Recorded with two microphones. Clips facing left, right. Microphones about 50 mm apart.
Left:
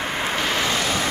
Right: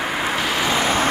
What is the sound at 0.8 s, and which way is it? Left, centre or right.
Vehicle, right.